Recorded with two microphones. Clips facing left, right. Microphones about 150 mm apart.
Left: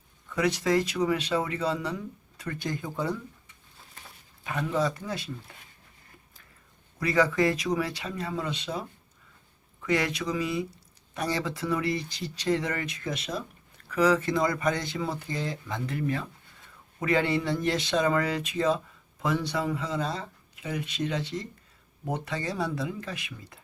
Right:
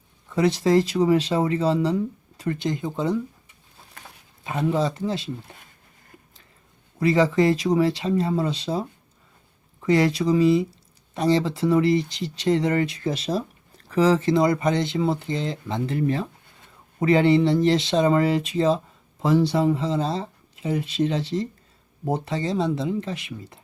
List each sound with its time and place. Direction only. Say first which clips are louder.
0.3 s speech: right 6 dB; 30° right (ahead or behind)
4.4 s speech: right 5 dB; 25° right (ahead or behind)
7.0 s speech: right 5 dB; 25° right (ahead or behind)
9.8 s speech: right 8 dB; 30° right (ahead or behind)